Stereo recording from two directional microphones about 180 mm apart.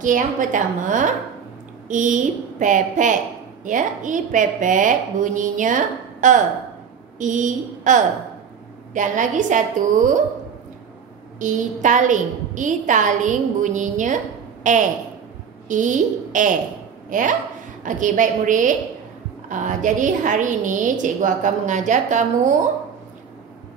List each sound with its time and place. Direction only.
0.0 s a woman's voice: 45° right (ahead or behind)
11.3 s a woman's voice: 45° right (ahead or behind)